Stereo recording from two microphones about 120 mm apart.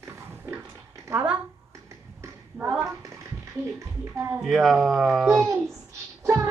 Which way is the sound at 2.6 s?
15° right (ahead or behind).